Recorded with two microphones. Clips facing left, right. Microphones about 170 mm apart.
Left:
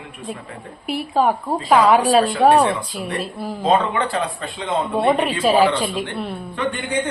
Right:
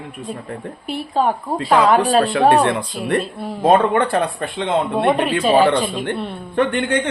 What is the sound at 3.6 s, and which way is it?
Speech, 55° right (ahead or behind).